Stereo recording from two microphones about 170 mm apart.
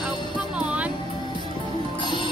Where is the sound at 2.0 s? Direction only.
25° left (ahead or behind).